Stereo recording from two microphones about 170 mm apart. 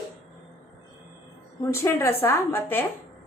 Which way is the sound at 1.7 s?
15° left (ahead or behind).